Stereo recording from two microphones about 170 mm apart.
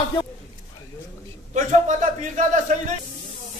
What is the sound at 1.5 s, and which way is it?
A man's voice, 45° right (ahead or behind).